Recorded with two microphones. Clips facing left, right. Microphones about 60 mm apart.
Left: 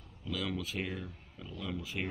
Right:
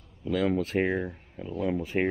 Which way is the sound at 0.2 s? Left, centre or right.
Right.